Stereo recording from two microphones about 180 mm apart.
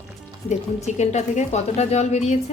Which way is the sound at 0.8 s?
40° left (ahead or behind).